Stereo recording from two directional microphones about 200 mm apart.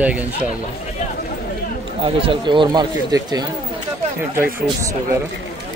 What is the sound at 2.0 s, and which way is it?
Speech, 25° right (ahead or behind).